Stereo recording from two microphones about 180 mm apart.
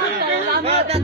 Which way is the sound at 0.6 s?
35° right (ahead or behind).